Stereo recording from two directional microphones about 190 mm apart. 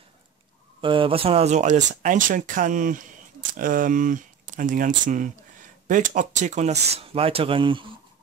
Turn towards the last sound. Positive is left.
turn(degrees=-25)  # may be behind; listen again after turning